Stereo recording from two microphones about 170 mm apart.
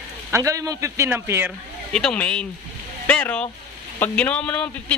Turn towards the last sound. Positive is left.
turn(degrees=5)  # may be behind; listen again after turning